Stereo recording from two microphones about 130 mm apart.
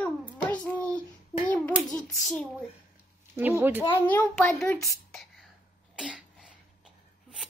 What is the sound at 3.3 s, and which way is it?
Dishes, 15° right (ahead or behind).